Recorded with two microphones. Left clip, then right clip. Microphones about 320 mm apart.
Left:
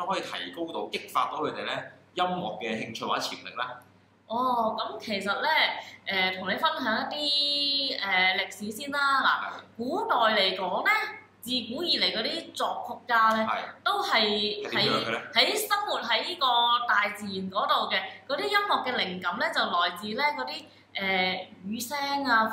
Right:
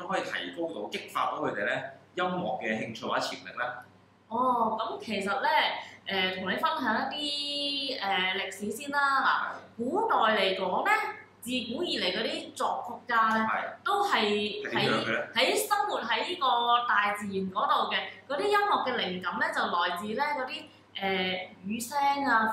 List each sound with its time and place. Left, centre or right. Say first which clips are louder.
0.1 s speech: even; centre
4.4 s a woman's voice: even; centre